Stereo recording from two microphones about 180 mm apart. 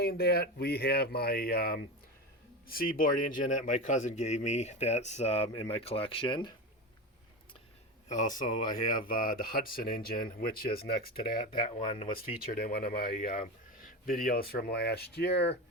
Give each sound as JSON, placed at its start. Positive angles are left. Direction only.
{"t": 0.0, "sound": "a man's voice", "side_deg": 60}
{"t": 8.0, "sound": "speech", "side_deg": 45}
{"t": 11.9, "sound": "a man's voice", "side_deg": 30}
{"t": 12.5, "sound": "speech", "side_deg": 55}